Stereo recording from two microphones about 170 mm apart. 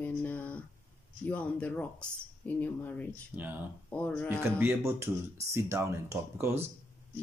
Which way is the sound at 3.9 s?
10° left (ahead or behind).